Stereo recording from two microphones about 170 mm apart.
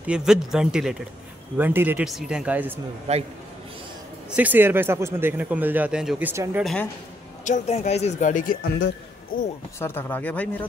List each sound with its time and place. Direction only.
0.0 s speech: 5° right (ahead or behind)
3.1 s a man's voice: 40° right (ahead or behind)
4.4 s speech: 10° right (ahead or behind)
6.6 s speech: 5° left (ahead or behind)
7.4 s speech: 45° left (ahead or behind)
8.6 s a man's voice: 90° left
9.8 s speech: 15° left (ahead or behind)